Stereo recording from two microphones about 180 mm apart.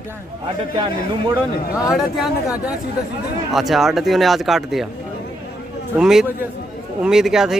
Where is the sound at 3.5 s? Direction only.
Centre (ahead or behind).